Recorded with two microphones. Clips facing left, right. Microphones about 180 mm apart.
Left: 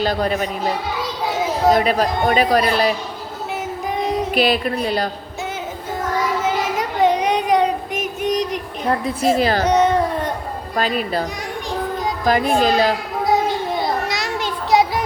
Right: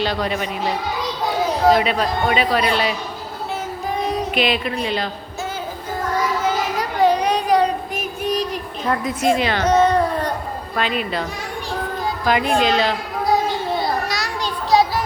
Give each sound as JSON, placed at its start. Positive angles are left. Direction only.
{"t": 0.0, "sound": "a woman's voice", "side_deg": 40}
{"t": 1.7, "sound": "a woman's voice", "side_deg": 40}
{"t": 3.9, "sound": "music", "side_deg": 20}
{"t": 4.4, "sound": "a woman's voice", "side_deg": 40}
{"t": 6.7, "sound": "child singing", "side_deg": 20}
{"t": 9.3, "sound": "a woman's voice", "side_deg": 40}
{"t": 9.6, "sound": "a sound", "side_deg": 20}
{"t": 10.8, "sound": "a woman's voice", "side_deg": 40}
{"t": 13.2, "sound": "children playing", "side_deg": 20}